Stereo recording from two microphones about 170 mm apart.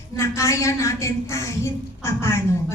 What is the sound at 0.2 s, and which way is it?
A woman's voice, 15° left (ahead or behind).